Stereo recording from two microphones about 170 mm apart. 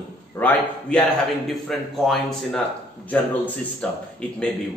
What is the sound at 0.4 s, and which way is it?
A man's voice, 5° left (ahead or behind).